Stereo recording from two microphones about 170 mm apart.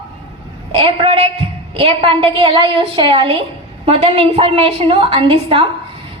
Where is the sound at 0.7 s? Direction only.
30° right (ahead or behind).